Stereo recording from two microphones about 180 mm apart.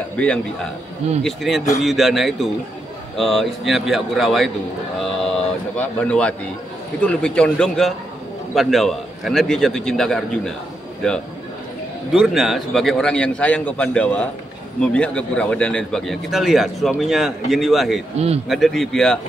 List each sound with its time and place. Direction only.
0.2 s a man's voice: 5° left (ahead or behind)
5.8 s a man's voice: 5° left (ahead or behind)
12.1 s a man's voice: centre (ahead or behind)
18.1 s speech: 35° right (ahead or behind)
18.5 s a man's voice: centre (ahead or behind)